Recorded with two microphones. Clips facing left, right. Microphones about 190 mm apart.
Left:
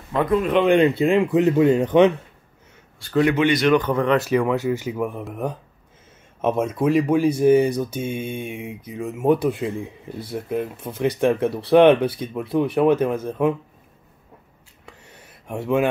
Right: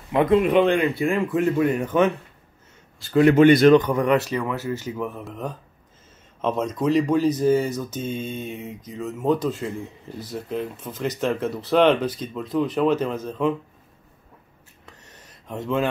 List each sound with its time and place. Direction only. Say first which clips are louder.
0.1 s speech: right 2 dB; 20° right (ahead or behind)
0.7 s speech: left 4 dB; 20° left (ahead or behind)
3.3 s speech: right 8 dB; 50° right (ahead or behind)
3.7 s speech: right 1 dB; 15° right (ahead or behind)
4.2 s speech: left 6 dB; 10° left (ahead or behind)
14.9 s a sound: left 3 dB; 10° left (ahead or behind)